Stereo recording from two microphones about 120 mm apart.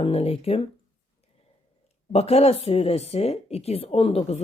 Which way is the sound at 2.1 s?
60° left (ahead or behind).